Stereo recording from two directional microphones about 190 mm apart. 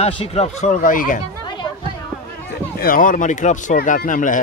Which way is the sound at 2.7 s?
45° left (ahead or behind).